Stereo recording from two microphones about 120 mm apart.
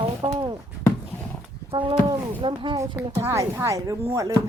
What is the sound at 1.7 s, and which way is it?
Speech, 45° right (ahead or behind).